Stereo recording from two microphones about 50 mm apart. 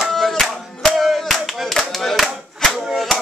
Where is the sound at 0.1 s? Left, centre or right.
Centre.